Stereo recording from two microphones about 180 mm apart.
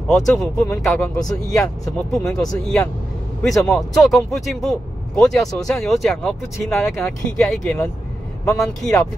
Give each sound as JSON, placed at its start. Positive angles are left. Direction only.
{"t": 0.1, "sound": "speech", "side_deg": 0}